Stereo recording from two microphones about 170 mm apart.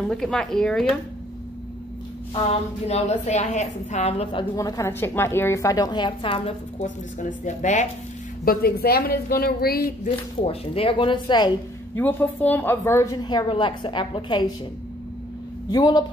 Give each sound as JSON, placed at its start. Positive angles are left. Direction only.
{"t": 0.1, "sound": "speech", "side_deg": 5}
{"t": 2.9, "sound": "a woman's voice", "side_deg": 40}
{"t": 4.6, "sound": "a woman's voice", "side_deg": 20}
{"t": 8.5, "sound": "a woman's voice", "side_deg": 65}
{"t": 10.0, "sound": "a woman's voice", "side_deg": 35}
{"t": 11.9, "sound": "a woman's voice", "side_deg": 10}
{"t": 15.7, "sound": "a woman's voice", "side_deg": 25}